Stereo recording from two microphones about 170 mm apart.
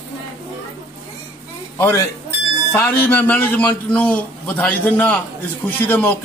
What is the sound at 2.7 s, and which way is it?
A man's voice, 10° left (ahead or behind).